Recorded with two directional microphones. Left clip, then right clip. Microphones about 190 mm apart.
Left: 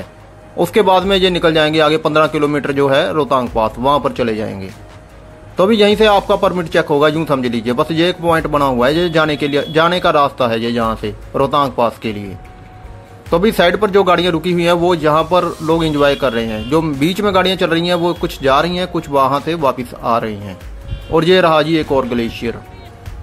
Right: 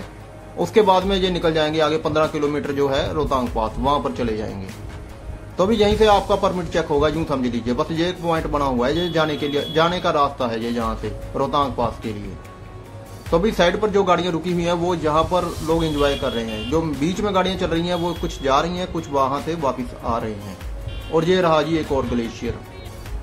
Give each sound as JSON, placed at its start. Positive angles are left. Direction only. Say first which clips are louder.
{"t": 0.6, "sound": "a man's voice", "louder": "left 4 dB", "side_deg": 40}
{"t": 5.6, "sound": "a man's voice", "louder": "left 6 dB", "side_deg": 40}
{"t": 13.3, "sound": "speech", "louder": "left 5 dB", "side_deg": 45}
{"t": 16.4, "sound": "speech", "louder": "left 5 dB", "side_deg": 0}
{"t": 16.7, "sound": "speech", "louder": "left 7 dB", "side_deg": 45}